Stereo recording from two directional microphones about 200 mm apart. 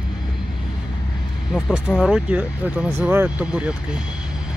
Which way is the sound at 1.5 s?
Centre (ahead or behind).